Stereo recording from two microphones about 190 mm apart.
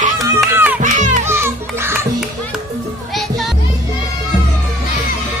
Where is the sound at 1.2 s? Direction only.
15° right (ahead or behind).